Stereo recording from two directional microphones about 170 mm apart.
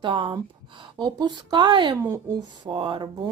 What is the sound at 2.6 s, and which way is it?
Speech, 30° right (ahead or behind).